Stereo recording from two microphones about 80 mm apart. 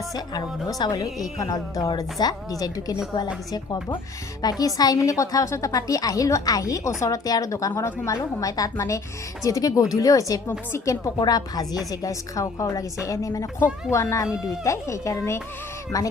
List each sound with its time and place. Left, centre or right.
0.1 s a woman's voice: left
4.4 s a woman's voice: left
11.9 s a woman's voice: left